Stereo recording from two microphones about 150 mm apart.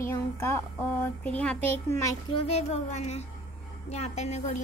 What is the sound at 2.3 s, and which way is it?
A woman's voice, 40° left (ahead or behind).